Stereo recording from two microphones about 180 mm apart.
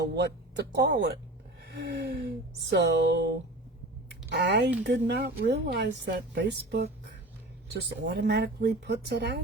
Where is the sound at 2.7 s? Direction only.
70° right (ahead or behind).